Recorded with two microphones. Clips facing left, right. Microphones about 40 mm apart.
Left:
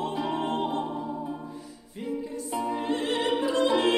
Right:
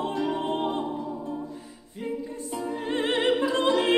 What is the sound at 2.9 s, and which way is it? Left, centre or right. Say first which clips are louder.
Opera: right 5 dB; right.